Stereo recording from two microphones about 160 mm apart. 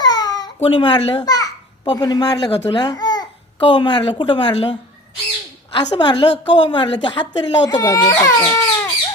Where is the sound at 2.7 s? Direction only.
25° left (ahead or behind).